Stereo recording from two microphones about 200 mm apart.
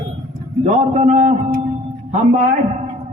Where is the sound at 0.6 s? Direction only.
35° right (ahead or behind).